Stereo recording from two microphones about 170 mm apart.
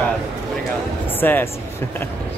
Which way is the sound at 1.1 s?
10° left (ahead or behind).